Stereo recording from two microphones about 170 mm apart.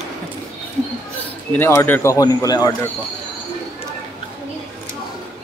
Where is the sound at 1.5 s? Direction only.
15° left (ahead or behind).